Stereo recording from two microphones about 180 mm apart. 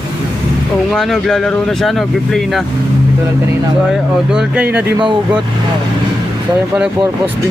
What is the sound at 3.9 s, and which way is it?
Speech, 5° right (ahead or behind).